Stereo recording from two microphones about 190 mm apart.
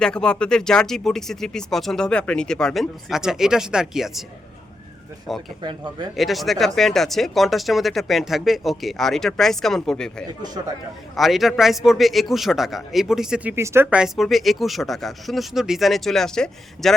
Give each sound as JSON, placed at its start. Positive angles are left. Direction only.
{"t": 0.0, "sound": "speech", "side_deg": 5}
{"t": 5.3, "sound": "speech", "side_deg": 0}
{"t": 5.6, "sound": "speech", "side_deg": -25}
{"t": 6.1, "sound": "speech", "side_deg": 0}
{"t": 13.8, "sound": "speech", "side_deg": 0}